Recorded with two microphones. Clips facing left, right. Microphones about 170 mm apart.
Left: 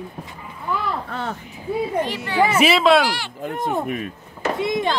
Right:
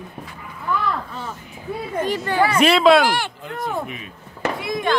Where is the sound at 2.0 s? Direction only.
45° right (ahead or behind).